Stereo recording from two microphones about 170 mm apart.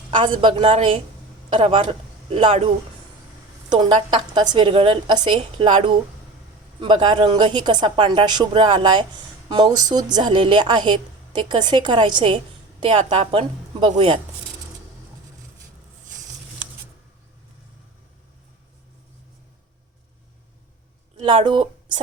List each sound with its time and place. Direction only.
0.1 s a woman's voice: 30° right (ahead or behind)
21.2 s a woman's voice: 30° right (ahead or behind)